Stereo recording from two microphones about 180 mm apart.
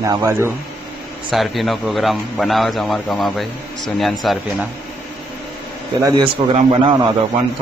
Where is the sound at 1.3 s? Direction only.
Centre (ahead or behind).